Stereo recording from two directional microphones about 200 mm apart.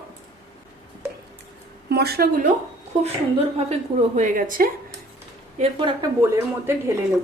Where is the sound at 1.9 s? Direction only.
50° right (ahead or behind).